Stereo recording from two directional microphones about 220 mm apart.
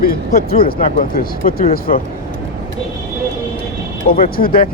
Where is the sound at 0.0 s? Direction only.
40° left (ahead or behind).